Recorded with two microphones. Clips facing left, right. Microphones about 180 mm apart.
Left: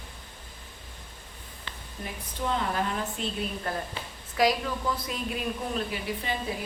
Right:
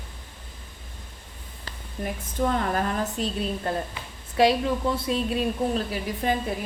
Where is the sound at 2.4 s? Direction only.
50° right (ahead or behind).